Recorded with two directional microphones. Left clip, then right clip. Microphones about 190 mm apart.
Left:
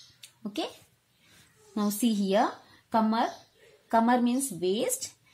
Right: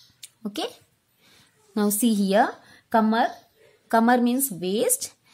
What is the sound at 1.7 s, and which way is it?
Speech, 35° right (ahead or behind).